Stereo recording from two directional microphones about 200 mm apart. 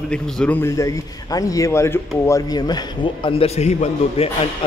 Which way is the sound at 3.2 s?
30° left (ahead or behind).